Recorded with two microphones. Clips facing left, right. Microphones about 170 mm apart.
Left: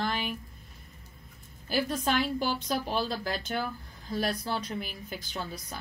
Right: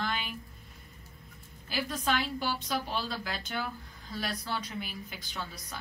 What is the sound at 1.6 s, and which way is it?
A woman's voice, 45° left (ahead or behind).